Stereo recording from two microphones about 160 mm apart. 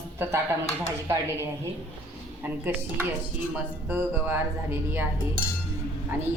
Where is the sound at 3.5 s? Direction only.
10° right (ahead or behind).